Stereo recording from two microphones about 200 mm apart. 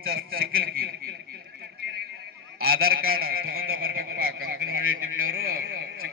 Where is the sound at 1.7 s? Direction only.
55° right (ahead or behind).